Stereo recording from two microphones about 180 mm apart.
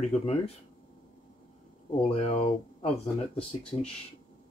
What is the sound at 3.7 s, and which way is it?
Speech, 30° left (ahead or behind).